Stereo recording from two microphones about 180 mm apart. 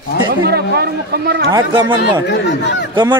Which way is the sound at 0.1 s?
65° left (ahead or behind).